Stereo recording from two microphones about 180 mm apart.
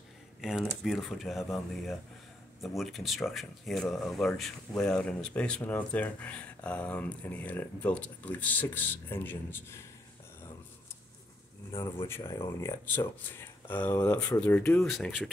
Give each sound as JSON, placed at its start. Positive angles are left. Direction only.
{"t": 0.4, "sound": "speech", "side_deg": 0}
{"t": 12.1, "sound": "speech", "side_deg": 15}
{"t": 14.9, "sound": "speech", "side_deg": 0}